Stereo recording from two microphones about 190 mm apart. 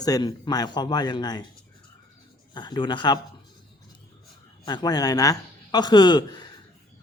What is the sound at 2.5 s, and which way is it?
Speech, 25° left (ahead or behind).